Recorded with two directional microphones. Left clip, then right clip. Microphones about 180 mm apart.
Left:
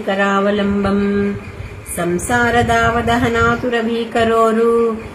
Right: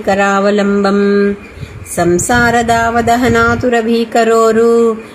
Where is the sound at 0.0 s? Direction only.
35° right (ahead or behind).